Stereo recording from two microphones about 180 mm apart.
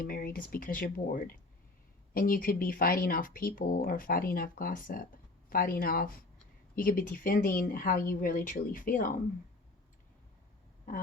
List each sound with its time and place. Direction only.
0.0 s speech: 55° left (ahead or behind)